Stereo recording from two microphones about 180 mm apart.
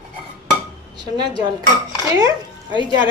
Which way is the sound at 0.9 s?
25° right (ahead or behind).